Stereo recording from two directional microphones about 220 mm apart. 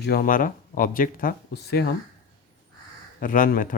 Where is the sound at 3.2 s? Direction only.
40° left (ahead or behind).